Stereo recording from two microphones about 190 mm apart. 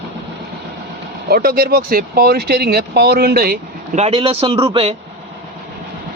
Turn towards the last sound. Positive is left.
turn(degrees=-30)  # may be behind; listen again after turning